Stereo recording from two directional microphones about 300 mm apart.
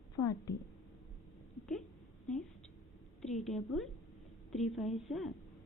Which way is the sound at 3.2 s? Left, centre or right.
Centre.